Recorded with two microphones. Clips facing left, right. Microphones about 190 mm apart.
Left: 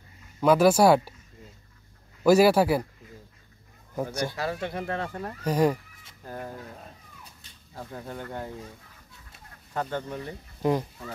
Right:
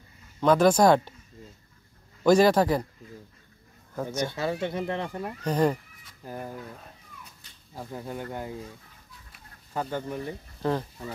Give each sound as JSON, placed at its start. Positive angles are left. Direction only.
{"t": 0.4, "sound": "speech", "side_deg": 10}
{"t": 2.2, "sound": "speech", "side_deg": 10}
{"t": 3.9, "sound": "speech", "side_deg": 10}
{"t": 4.3, "sound": "speech", "side_deg": -25}
{"t": 5.4, "sound": "speech", "side_deg": 10}
{"t": 6.2, "sound": "speech", "side_deg": -10}
{"t": 7.7, "sound": "speech", "side_deg": -10}
{"t": 9.8, "sound": "speech", "side_deg": -10}
{"t": 10.6, "sound": "speech", "side_deg": 15}